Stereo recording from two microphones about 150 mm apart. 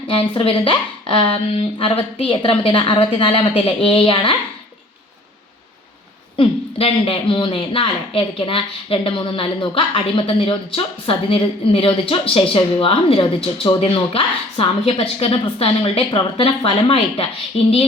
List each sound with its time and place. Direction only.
0.1 s speech: 35° left (ahead or behind)
6.3 s speech: 40° left (ahead or behind)